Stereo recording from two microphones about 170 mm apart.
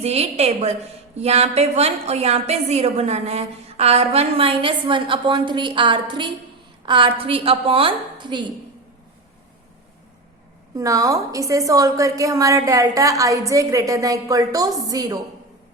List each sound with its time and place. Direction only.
0.0 s a woman's voice: 40° right (ahead or behind)
10.8 s a woman's voice: 20° right (ahead or behind)